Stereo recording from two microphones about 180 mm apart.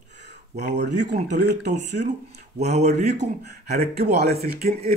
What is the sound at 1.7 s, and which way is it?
Speech, 40° right (ahead or behind).